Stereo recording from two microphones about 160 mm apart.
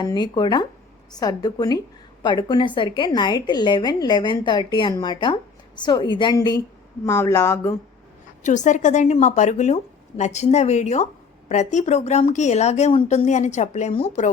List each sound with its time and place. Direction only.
0.0 s a woman's voice: 25° left (ahead or behind)
8.4 s a woman's voice: 50° left (ahead or behind)